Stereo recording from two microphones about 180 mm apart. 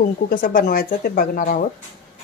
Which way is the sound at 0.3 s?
50° left (ahead or behind).